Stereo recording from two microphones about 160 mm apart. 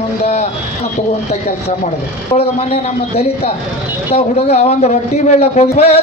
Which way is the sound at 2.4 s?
45° left (ahead or behind).